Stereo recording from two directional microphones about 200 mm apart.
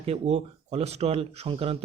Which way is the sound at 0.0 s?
30° right (ahead or behind).